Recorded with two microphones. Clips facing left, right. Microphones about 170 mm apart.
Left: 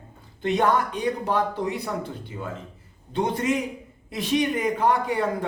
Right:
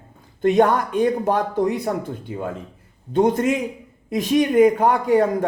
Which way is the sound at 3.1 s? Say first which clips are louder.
Right 6 dB; 45° right (ahead or behind).